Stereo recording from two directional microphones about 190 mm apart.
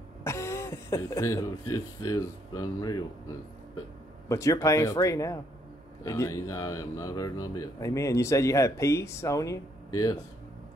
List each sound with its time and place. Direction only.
0.2 s a man's voice: 15° left (ahead or behind)